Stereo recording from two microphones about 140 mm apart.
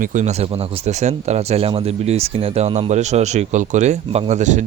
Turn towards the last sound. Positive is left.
turn(degrees=-60)  # may be behind; listen again after turning